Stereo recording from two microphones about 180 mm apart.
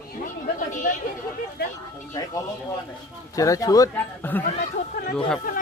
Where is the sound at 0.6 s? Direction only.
45° left (ahead or behind).